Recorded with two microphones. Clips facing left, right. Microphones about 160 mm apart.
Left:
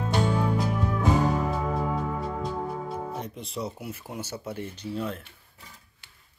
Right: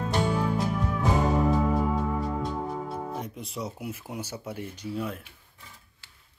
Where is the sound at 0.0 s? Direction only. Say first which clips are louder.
Left 1 dB; centre (ahead or behind).